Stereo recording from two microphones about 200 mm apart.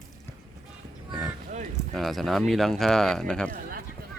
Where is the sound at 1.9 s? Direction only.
Centre (ahead or behind).